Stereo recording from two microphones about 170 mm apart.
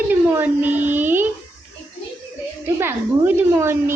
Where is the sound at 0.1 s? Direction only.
10° right (ahead or behind).